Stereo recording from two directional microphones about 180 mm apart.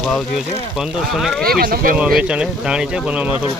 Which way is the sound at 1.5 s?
55° right (ahead or behind).